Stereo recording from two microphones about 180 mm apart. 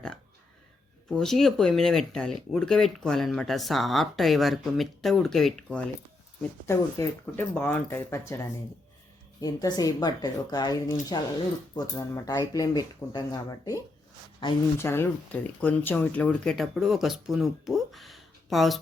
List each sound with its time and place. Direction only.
1.1 s speech: centre (ahead or behind)
6.7 s speech: 15° left (ahead or behind)
9.4 s speech: 20° left (ahead or behind)
14.8 s speech: 15° left (ahead or behind)